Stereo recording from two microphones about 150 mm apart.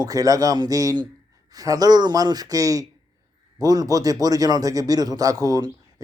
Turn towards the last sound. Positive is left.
turn(degrees=-25)  # may be behind; listen again after turning